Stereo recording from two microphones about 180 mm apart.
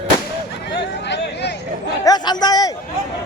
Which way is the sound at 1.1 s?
70° left (ahead or behind).